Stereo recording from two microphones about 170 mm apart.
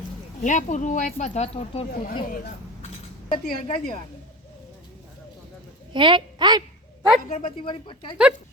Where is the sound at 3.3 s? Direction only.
45° left (ahead or behind).